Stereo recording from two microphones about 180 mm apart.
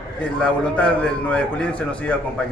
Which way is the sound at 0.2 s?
5° left (ahead or behind).